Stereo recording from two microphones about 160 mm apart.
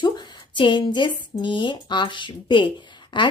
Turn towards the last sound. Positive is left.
turn(degrees=30)  # may be behind; listen again after turning